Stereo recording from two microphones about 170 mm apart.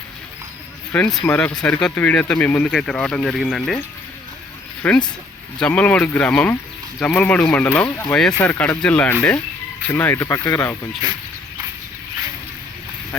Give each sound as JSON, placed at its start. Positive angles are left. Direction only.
{"t": 0.9, "sound": "speech", "side_deg": 5}
{"t": 4.8, "sound": "speech", "side_deg": 10}